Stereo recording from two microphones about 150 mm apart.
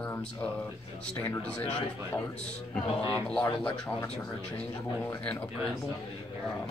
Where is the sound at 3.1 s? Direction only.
5° left (ahead or behind).